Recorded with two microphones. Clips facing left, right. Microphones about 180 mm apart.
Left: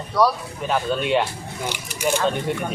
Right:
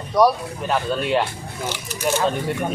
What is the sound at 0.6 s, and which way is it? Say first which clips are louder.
Speech: even; centre (ahead or behind).